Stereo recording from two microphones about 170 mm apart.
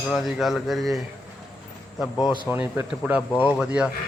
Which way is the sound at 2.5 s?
10° right (ahead or behind).